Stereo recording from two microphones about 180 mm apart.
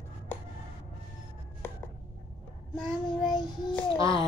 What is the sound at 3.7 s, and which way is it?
Speech, 30° left (ahead or behind).